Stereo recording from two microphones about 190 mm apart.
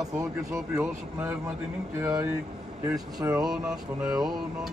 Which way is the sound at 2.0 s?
5° right (ahead or behind).